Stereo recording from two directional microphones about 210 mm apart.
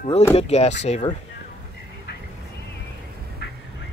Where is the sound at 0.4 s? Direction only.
30° left (ahead or behind).